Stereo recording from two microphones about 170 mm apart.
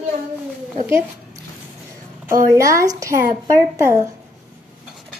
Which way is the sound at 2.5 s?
20° right (ahead or behind).